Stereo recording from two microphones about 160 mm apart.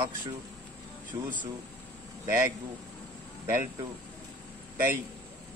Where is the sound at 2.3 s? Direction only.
15° right (ahead or behind).